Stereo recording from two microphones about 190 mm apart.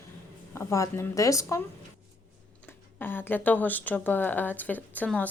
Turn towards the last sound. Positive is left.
turn(degrees=10)  # may be behind; listen again after turning